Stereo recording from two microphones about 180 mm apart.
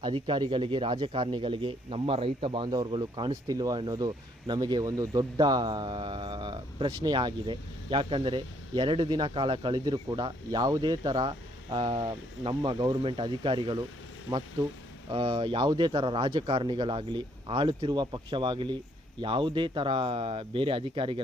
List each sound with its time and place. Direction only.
0.0 s speech: 25° right (ahead or behind)